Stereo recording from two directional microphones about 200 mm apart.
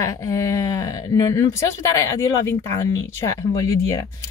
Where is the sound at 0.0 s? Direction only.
15° left (ahead or behind).